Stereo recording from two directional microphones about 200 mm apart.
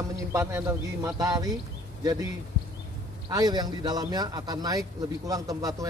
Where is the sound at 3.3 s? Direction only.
20° right (ahead or behind).